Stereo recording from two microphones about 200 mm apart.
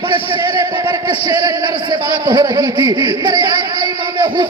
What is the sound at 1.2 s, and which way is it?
Speech, 20° right (ahead or behind).